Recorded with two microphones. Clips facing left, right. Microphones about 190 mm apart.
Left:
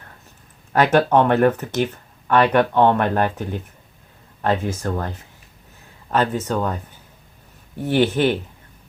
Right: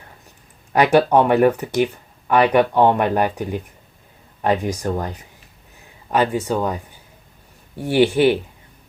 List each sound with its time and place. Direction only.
0.7 s speech: 10° right (ahead or behind)